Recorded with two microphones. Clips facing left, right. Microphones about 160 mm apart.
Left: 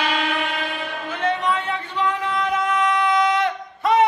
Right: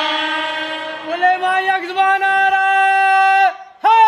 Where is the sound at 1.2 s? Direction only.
65° right (ahead or behind).